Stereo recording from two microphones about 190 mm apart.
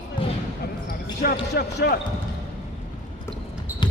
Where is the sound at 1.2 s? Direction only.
55° left (ahead or behind).